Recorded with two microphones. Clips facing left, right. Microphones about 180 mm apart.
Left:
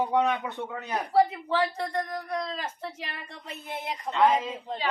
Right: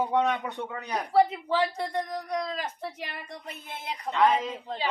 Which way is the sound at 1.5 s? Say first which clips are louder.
Even; 15° right (ahead or behind).